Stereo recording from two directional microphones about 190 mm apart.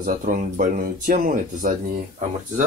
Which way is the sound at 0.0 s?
45° right (ahead or behind).